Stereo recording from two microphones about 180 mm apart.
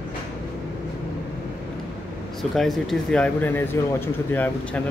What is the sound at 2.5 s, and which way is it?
Speech, centre (ahead or behind).